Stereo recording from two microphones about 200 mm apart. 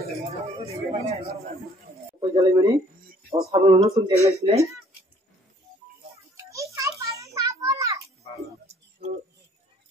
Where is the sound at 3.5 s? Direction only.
15° right (ahead or behind).